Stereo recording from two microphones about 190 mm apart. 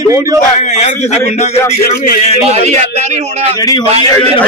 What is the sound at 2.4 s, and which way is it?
A man's voice, 35° right (ahead or behind).